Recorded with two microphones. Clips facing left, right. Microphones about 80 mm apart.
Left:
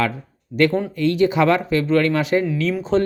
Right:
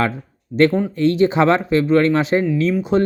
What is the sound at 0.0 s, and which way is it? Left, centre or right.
Speech, right.